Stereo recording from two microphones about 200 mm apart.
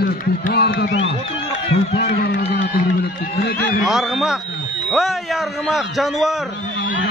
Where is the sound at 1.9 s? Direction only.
55° left (ahead or behind).